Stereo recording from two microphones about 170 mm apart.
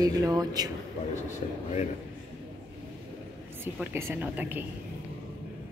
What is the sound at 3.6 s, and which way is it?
A woman's voice, 15° right (ahead or behind).